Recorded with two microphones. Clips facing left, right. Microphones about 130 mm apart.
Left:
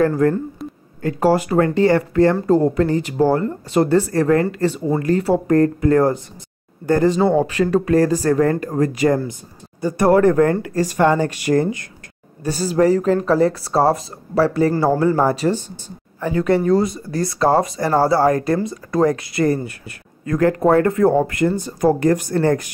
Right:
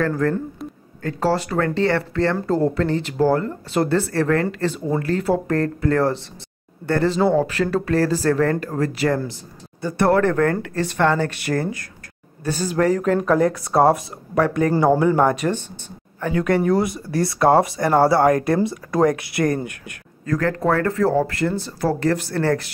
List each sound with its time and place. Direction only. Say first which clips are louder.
0.0 s speech: left 4 dB; 20° left (ahead or behind)
12.7 s speech: left 3 dB; 5° left (ahead or behind)
20.2 s speech: left 5 dB; 20° left (ahead or behind)